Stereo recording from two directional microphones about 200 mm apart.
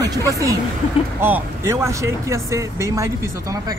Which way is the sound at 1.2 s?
10° right (ahead or behind).